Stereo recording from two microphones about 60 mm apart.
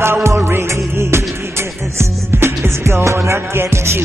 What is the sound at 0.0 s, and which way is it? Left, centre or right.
Music, right.